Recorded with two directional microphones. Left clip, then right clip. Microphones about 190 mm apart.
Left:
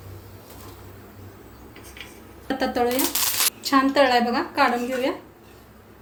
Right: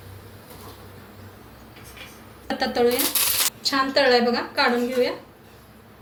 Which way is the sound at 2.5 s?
45° left (ahead or behind).